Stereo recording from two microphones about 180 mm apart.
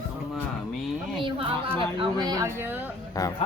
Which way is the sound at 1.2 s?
30° right (ahead or behind).